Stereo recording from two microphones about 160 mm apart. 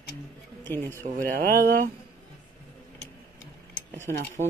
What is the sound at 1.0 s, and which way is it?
Speech, 60° right (ahead or behind).